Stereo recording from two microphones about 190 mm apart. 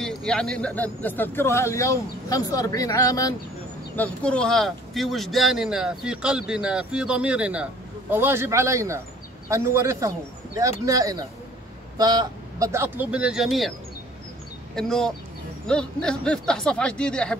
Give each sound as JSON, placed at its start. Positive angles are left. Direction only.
{"t": 0.0, "sound": "a man's voice", "side_deg": 5}
{"t": 3.9, "sound": "speech", "side_deg": 5}
{"t": 14.8, "sound": "speech", "side_deg": 5}